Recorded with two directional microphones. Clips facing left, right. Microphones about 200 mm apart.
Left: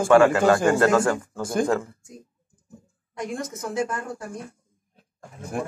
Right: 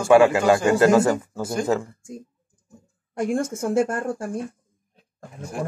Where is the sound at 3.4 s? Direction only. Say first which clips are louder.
Right 6 dB; 30° right (ahead or behind).